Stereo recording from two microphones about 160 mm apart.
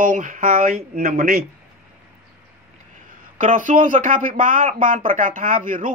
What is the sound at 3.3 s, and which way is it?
Speech, 55° right (ahead or behind).